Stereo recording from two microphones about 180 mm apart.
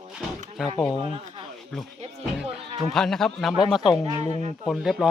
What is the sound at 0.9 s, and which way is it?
Speech, 30° right (ahead or behind).